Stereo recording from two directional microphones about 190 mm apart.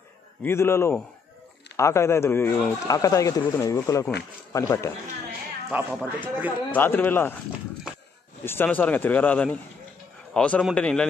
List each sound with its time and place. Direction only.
0.4 s speech: 10° left (ahead or behind)
5.7 s speech: 10° right (ahead or behind)
6.7 s speech: 10° left (ahead or behind)
8.5 s a man's voice: 10° left (ahead or behind)